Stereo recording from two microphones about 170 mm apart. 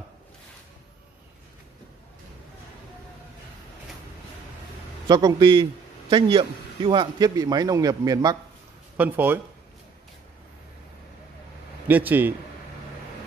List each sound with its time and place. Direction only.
5.0 s a man's voice: 25° right (ahead or behind)
8.9 s speech: 10° right (ahead or behind)
11.9 s speech: 10° right (ahead or behind)